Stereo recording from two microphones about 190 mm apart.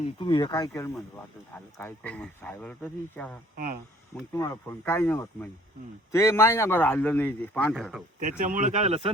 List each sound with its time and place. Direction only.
0.2 s a man's voice: 25° left (ahead or behind); by 8.0 s centre (ahead or behind)
8.2 s speech: 45° right (ahead or behind)